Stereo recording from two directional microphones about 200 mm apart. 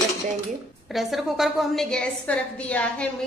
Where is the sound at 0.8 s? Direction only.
Centre (ahead or behind).